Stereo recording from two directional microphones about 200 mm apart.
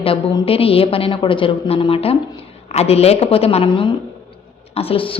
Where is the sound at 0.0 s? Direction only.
30° left (ahead or behind).